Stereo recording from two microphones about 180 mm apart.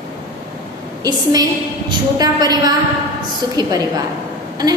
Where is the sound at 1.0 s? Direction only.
20° right (ahead or behind).